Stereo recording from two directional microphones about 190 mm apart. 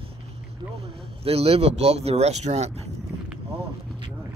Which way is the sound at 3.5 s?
30° right (ahead or behind).